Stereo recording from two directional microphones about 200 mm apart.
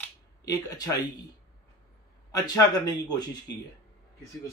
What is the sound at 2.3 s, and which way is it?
Speech, 20° left (ahead or behind).